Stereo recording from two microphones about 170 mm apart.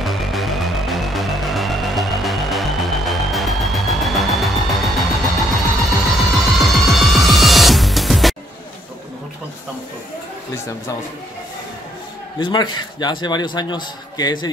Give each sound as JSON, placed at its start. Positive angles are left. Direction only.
{"t": 0.0, "sound": "music", "side_deg": 0}
{"t": 12.4, "sound": "a man's voice", "side_deg": 25}